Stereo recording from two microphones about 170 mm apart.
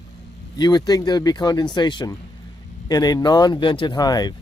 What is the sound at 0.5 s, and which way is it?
Speech, 25° left (ahead or behind).